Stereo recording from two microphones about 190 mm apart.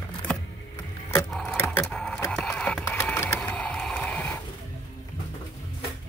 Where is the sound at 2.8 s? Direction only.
10° left (ahead or behind).